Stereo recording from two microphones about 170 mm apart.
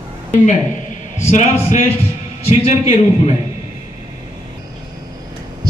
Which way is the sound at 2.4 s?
35° left (ahead or behind).